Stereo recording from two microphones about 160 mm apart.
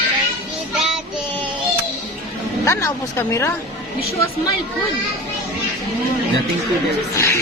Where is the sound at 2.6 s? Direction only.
15° left (ahead or behind).